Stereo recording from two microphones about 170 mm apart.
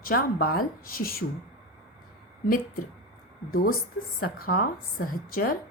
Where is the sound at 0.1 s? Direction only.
60° left (ahead or behind).